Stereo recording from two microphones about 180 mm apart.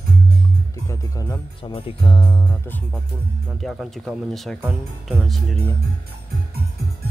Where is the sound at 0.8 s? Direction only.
15° left (ahead or behind).